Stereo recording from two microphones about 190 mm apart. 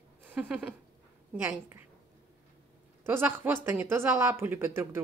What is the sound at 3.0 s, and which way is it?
Speech, 10° right (ahead or behind).